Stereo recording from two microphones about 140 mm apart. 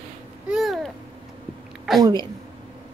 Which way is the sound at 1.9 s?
Centre (ahead or behind).